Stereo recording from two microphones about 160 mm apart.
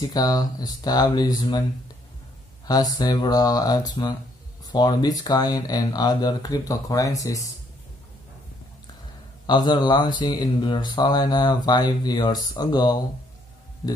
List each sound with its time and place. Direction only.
0.0 s speech: 25° left (ahead or behind)
2.6 s speech: 25° left (ahead or behind)
9.5 s speech: 25° left (ahead or behind)